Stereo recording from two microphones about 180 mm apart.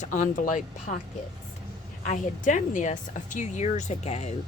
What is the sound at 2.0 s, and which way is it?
Speech, 45° left (ahead or behind).